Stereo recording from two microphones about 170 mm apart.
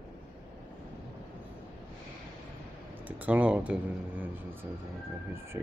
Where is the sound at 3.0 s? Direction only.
10° right (ahead or behind).